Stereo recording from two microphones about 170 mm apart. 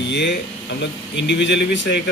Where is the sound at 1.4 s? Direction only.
90° left.